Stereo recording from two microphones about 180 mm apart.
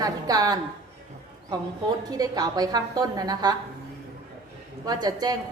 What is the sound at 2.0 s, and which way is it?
A woman's voice, 20° right (ahead or behind).